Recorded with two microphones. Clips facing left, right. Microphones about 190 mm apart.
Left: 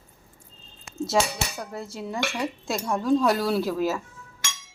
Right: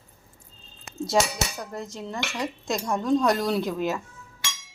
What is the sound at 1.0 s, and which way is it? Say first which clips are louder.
A woman's voice: even; 5° left (ahead or behind).